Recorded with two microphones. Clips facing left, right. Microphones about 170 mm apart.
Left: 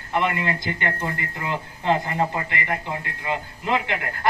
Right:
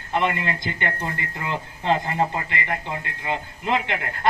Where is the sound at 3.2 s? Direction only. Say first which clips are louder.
Even; 20° right (ahead or behind).